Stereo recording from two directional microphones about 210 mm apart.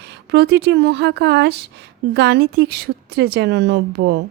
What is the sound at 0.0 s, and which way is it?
Speech, 50° right (ahead or behind).